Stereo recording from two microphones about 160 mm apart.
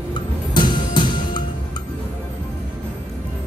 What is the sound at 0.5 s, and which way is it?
Music, 30° left (ahead or behind).